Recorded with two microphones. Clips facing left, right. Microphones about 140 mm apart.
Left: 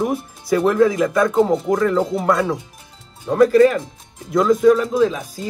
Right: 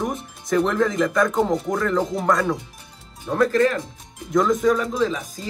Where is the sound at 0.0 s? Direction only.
5° left (ahead or behind).